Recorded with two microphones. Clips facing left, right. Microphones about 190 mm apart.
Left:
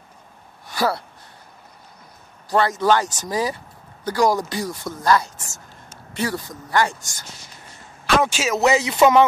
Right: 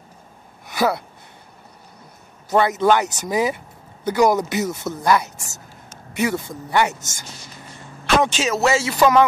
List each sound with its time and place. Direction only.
0.7 s speech: 15° right (ahead or behind)
2.5 s speech: 20° right (ahead or behind)
8.2 s speech: 10° left (ahead or behind)